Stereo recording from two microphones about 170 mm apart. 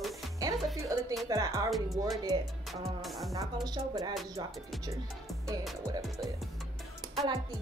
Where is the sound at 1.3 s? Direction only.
20° right (ahead or behind).